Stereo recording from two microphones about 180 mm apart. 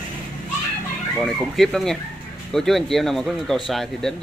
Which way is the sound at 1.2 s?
Centre (ahead or behind).